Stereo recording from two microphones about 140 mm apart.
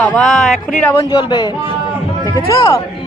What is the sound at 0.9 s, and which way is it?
A man's voice, 30° left (ahead or behind).